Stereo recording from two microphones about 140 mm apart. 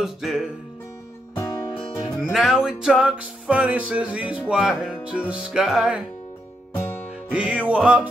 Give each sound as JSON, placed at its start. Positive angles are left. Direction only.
{"t": 0.0, "sound": "music", "side_deg": 0}
{"t": 1.3, "sound": "music", "side_deg": 25}
{"t": 1.7, "sound": "music", "side_deg": 35}
{"t": 2.3, "sound": "music", "side_deg": 0}
{"t": 7.3, "sound": "music", "side_deg": -5}